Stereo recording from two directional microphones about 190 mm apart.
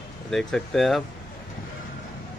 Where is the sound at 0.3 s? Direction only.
Centre (ahead or behind).